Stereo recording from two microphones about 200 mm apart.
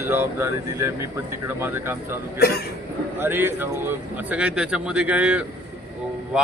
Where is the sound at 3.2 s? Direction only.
10° right (ahead or behind).